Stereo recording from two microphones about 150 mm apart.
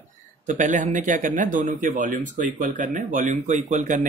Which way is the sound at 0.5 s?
55° right (ahead or behind).